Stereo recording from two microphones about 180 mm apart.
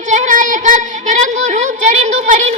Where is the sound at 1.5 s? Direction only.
40° right (ahead or behind).